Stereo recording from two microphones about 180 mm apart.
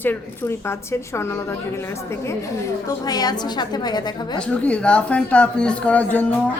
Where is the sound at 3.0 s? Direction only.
20° left (ahead or behind).